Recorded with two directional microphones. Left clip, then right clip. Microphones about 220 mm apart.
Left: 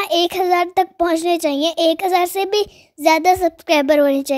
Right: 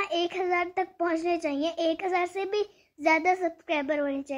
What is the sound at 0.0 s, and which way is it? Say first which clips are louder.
A child's voice: left 11 dB; 45° left (ahead or behind).